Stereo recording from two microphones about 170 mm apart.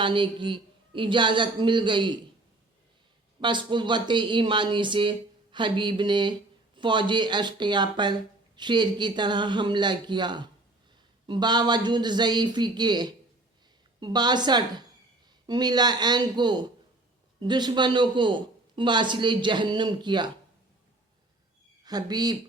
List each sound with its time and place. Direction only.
0.0 s speech: 30° right (ahead or behind)
3.4 s speech: 25° right (ahead or behind)
21.8 s speech: 25° right (ahead or behind)